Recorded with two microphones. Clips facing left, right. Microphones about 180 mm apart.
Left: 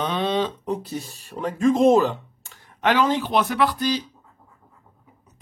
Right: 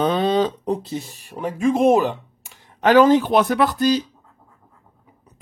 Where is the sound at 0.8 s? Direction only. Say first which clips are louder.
Right 3 dB; 15° right (ahead or behind).